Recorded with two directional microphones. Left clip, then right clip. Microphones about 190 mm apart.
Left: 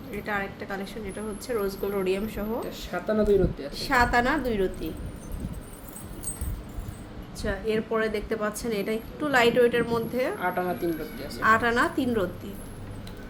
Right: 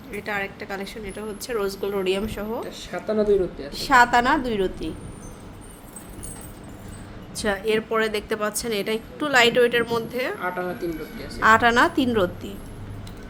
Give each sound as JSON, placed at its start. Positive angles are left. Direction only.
{"t": 0.1, "sound": "a woman's voice", "side_deg": -20}
{"t": 2.6, "sound": "speech", "side_deg": 25}
{"t": 3.7, "sound": "a woman's voice", "side_deg": -20}
{"t": 7.3, "sound": "a woman's voice", "side_deg": -30}
{"t": 10.8, "sound": "speech", "side_deg": 25}
{"t": 11.3, "sound": "a woman's voice", "side_deg": -30}